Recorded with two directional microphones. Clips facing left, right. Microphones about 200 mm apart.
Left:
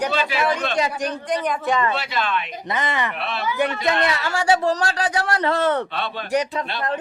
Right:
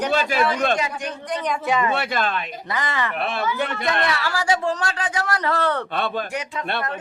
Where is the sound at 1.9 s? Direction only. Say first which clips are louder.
Right 1 dB; 55° right (ahead or behind).